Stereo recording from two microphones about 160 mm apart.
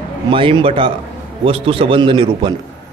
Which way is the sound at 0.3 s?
30° right (ahead or behind).